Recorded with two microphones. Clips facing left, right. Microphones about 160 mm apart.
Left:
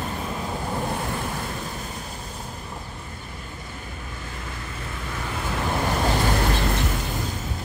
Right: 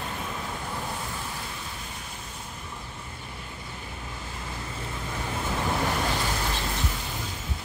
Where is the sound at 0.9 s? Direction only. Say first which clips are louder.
Left 7 dB; 60° left (ahead or behind).